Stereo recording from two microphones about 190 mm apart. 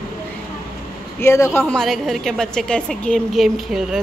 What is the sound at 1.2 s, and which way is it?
A woman's voice, 15° left (ahead or behind).